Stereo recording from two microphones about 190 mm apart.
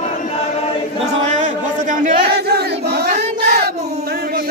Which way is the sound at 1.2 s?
40° right (ahead or behind).